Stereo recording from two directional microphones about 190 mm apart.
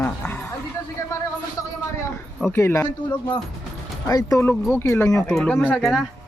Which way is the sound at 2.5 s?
15° left (ahead or behind).